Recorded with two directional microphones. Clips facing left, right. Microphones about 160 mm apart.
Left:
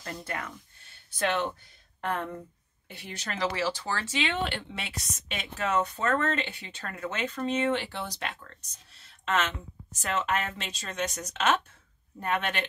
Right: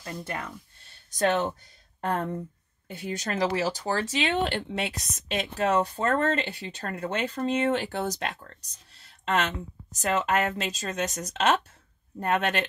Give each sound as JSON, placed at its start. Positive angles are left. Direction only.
{"t": 0.2, "sound": "speech", "side_deg": -25}
{"t": 1.1, "sound": "speech", "side_deg": -40}